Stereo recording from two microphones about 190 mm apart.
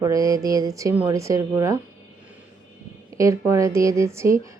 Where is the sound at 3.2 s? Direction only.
15° right (ahead or behind).